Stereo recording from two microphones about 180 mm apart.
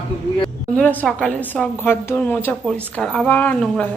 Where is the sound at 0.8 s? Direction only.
10° left (ahead or behind).